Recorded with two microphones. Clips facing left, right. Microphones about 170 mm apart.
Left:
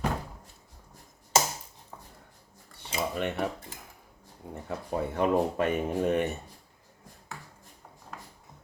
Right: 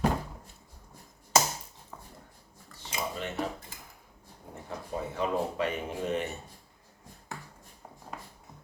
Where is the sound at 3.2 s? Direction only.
60° left (ahead or behind).